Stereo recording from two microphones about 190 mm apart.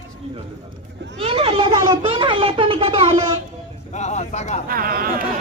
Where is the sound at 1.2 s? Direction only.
30° right (ahead or behind).